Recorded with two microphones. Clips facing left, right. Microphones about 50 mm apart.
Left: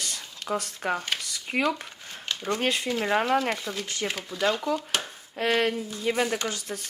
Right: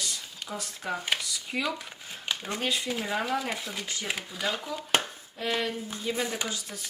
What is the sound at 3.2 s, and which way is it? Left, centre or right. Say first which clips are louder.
Speech: left 6 dB; left.